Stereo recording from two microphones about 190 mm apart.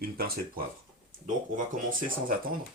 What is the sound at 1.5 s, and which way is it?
Speech, 45° right (ahead or behind).